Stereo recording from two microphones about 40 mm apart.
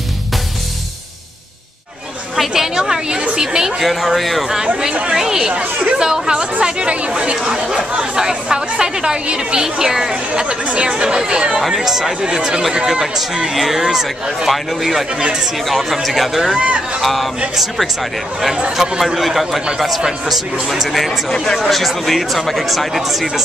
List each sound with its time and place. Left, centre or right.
2.3 s speech: centre; by 3.6 s right
3.6 s speech: centre
5.1 s speech: centre
5.5 s speech: right
5.9 s speech: centre
7.3 s speech: centre
11.6 s speech: centre
12.2 s speech: centre
16.4 s speech: right
17.0 s speech: centre
18.8 s speech: centre
20.6 s speech: centre
20.9 s speech: centre